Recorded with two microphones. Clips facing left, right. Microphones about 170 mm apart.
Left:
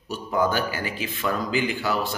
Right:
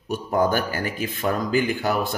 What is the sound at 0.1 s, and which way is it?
A man's voice, 50° right (ahead or behind).